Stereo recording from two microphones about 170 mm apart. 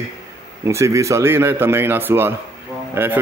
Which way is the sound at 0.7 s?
15° right (ahead or behind).